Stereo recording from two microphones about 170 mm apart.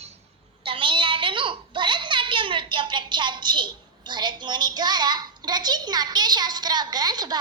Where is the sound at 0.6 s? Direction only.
30° right (ahead or behind).